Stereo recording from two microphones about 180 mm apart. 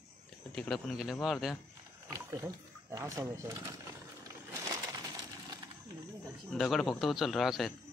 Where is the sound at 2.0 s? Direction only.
15° right (ahead or behind).